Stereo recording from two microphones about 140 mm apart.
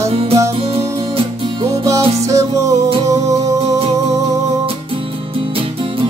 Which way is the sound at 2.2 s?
20° right (ahead or behind).